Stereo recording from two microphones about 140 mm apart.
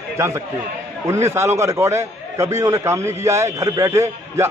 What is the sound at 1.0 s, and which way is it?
A man's voice, 20° right (ahead or behind).